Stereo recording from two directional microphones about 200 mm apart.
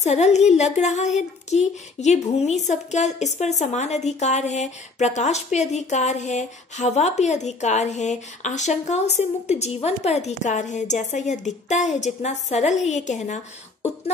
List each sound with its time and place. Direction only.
0.0 s speech: 35° left (ahead or behind)